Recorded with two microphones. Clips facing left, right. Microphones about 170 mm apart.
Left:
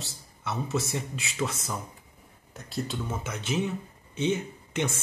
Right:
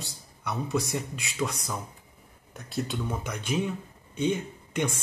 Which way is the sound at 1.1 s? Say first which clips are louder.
Left 1 dB; 5° left (ahead or behind).